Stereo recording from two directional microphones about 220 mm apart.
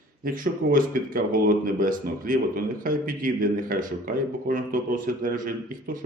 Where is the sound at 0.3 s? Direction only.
40° right (ahead or behind).